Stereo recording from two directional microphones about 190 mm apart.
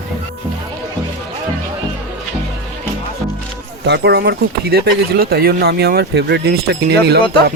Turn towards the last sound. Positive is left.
turn(degrees=-60)  # may be behind; listen again after turning